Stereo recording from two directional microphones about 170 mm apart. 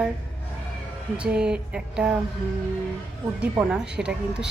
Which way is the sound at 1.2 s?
5° right (ahead or behind).